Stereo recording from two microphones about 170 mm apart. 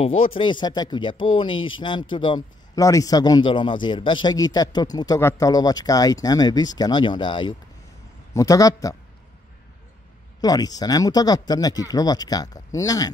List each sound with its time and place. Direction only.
0.0 s speech: 35° left (ahead or behind)
10.4 s speech: 20° left (ahead or behind)